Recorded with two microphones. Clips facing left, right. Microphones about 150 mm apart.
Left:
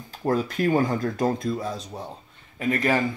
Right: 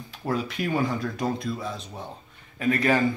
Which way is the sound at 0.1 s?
45° left (ahead or behind).